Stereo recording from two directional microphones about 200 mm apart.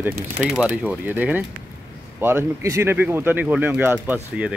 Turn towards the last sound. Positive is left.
turn(degrees=-5)  # may be behind; listen again after turning